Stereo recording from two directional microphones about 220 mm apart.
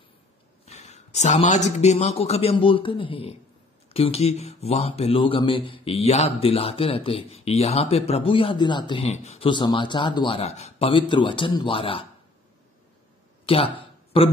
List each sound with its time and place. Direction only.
0.7 s speech: 30° left (ahead or behind)
13.5 s speech: 25° left (ahead or behind)